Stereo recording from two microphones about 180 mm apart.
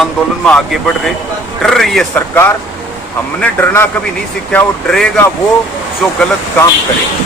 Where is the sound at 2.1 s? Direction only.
10° left (ahead or behind).